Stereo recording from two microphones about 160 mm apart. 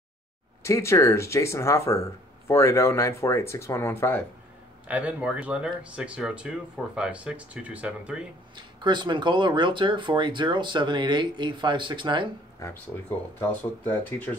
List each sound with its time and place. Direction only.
0.7 s speech: 15° left (ahead or behind)
4.8 s speech: 10° right (ahead or behind)
8.5 s speech: 30° right (ahead or behind)
12.6 s speech: 20° left (ahead or behind)